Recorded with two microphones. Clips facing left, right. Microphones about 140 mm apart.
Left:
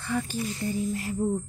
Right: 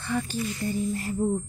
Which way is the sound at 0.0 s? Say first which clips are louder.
Right 1 dB; 5° left (ahead or behind).